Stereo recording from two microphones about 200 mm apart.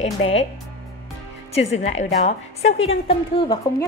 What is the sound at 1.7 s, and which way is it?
A woman's voice, 35° left (ahead or behind).